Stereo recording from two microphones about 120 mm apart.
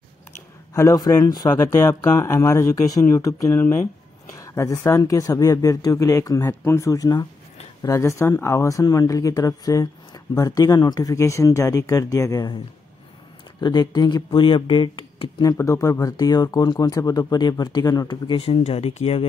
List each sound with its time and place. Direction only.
0.7 s speech: 30° left (ahead or behind)
13.6 s speech: 35° left (ahead or behind)
15.4 s speech: 25° left (ahead or behind); by 19.2 s 55° left (ahead or behind)